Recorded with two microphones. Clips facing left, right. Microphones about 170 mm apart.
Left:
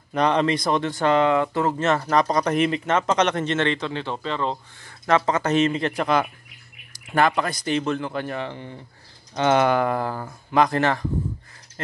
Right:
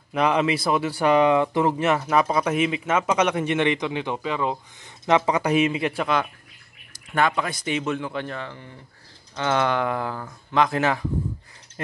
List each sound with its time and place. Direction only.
0.1 s a man's voice: 5° right (ahead or behind)
8.4 s speech: 20° left (ahead or behind)
9.7 s a man's voice: 5° left (ahead or behind)